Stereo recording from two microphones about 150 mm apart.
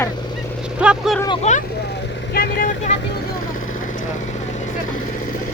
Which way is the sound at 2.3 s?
85° left.